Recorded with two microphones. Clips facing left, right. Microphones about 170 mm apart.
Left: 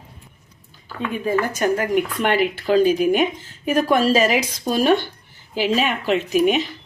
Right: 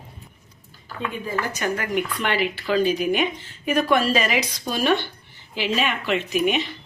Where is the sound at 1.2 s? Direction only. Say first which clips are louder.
Left 7 dB; 45° left (ahead or behind).